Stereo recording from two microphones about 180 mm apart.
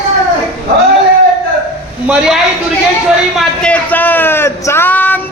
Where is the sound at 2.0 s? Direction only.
5° right (ahead or behind).